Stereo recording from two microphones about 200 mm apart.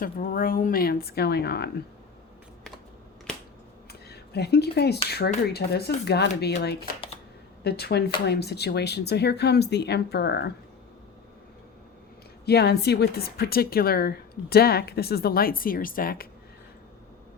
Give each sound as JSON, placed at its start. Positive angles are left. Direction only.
{"t": 0.0, "sound": "speech", "side_deg": 45}
{"t": 4.1, "sound": "speech", "side_deg": 55}
{"t": 12.5, "sound": "speech", "side_deg": 55}